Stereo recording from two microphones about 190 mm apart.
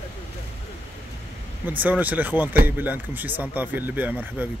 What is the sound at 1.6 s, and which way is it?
Speech, 10° right (ahead or behind).